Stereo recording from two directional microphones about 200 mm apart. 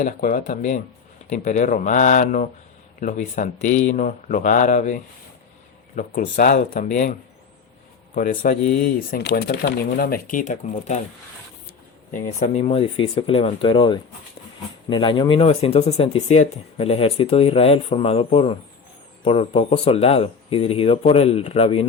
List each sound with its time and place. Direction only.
0.0 s speech: 40° left (ahead or behind)
6.0 s speech: 40° left (ahead or behind)
12.1 s speech: 40° left (ahead or behind)